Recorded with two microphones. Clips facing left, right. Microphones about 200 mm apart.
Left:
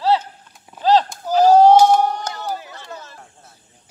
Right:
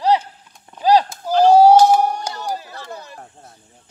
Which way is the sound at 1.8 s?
10° right (ahead or behind).